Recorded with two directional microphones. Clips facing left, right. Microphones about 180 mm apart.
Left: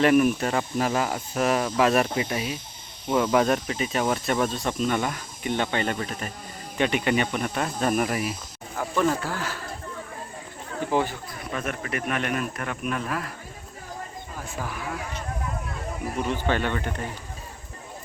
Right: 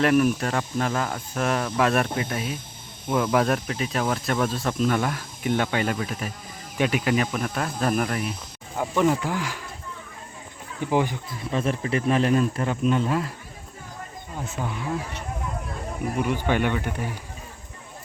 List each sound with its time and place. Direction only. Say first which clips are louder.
0.0 s speech: left 1 dB; 5° left (ahead or behind)
8.7 s speech: right 2 dB; 15° right (ahead or behind)
10.9 s speech: right 2 dB; 15° right (ahead or behind)
11.3 s speech: right 5 dB; 30° right (ahead or behind)
14.3 s speech: right 3 dB; 25° right (ahead or behind)
16.1 s speech: right 2 dB; 10° right (ahead or behind)